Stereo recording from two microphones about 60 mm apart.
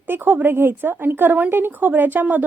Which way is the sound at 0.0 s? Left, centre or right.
Right.